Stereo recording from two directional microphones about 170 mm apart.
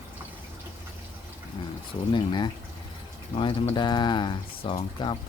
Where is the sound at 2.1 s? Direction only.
25° left (ahead or behind).